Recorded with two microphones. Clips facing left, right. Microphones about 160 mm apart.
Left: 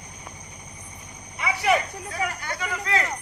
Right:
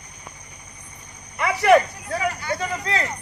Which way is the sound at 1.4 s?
60° right (ahead or behind).